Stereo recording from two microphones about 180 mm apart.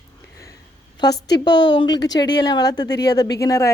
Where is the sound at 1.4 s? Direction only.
25° left (ahead or behind).